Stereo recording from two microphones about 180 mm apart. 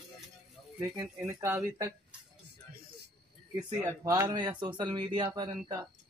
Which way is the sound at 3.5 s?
20° right (ahead or behind).